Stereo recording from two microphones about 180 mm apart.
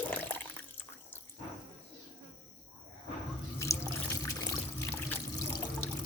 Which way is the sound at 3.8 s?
20° left (ahead or behind).